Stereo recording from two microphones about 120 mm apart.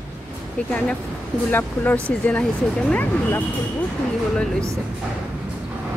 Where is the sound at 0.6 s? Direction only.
10° left (ahead or behind).